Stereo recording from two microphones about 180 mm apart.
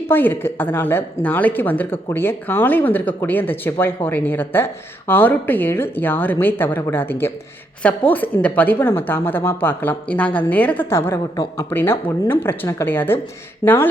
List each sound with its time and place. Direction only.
0.1 s speech: 10° left (ahead or behind)